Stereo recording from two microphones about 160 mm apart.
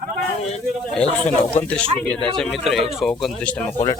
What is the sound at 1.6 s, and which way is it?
A man's voice, 5° left (ahead or behind).